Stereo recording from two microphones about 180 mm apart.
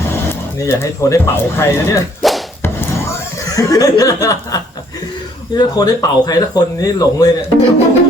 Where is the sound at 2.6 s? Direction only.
15° left (ahead or behind).